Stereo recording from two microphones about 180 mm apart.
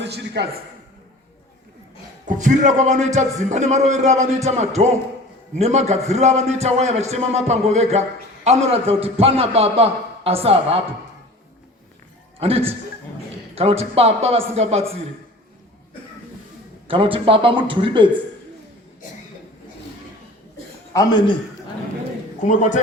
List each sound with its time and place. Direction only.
0.0 s a man's voice: 75° right (ahead or behind)
2.2 s a man's voice: 45° right (ahead or behind)
12.4 s a man's voice: 35° right (ahead or behind)
16.9 s speech: 30° right (ahead or behind)
20.9 s a man's voice: 20° left (ahead or behind)